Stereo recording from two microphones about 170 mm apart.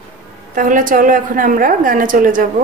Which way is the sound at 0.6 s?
50° right (ahead or behind).